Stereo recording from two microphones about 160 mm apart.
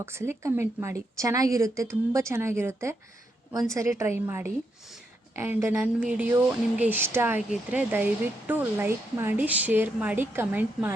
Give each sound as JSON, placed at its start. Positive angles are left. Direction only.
{"t": 0.0, "sound": "a woman's voice", "side_deg": -15}